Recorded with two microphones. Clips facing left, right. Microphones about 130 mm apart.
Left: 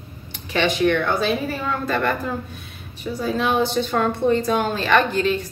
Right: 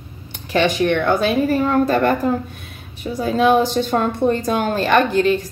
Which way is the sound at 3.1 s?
50° right (ahead or behind).